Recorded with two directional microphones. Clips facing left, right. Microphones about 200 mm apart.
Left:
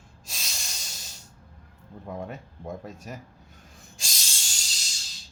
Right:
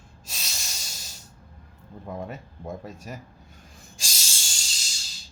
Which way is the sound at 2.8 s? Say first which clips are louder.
Right 1 dB; centre (ahead or behind).